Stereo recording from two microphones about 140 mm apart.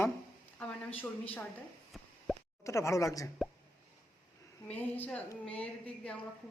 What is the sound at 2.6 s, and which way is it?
Speech, 20° left (ahead or behind).